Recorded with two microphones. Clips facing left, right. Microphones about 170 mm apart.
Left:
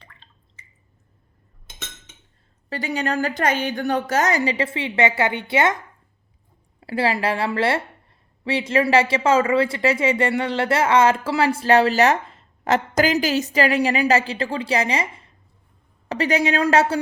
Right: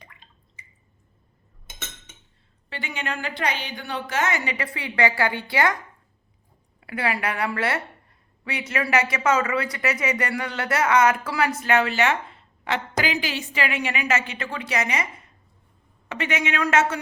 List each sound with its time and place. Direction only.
0.0 s drip: 15° right (ahead or behind)
2.6 s a woman's voice: 40° left (ahead or behind); by 5.7 s 20° left (ahead or behind)
6.7 s a woman's voice: 30° left (ahead or behind)